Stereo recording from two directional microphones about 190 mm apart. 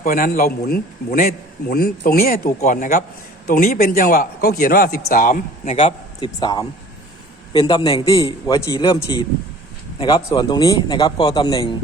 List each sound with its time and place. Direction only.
0.0 s a man's voice: 50° left (ahead or behind)
6.1 s a man's voice: 20° left (ahead or behind)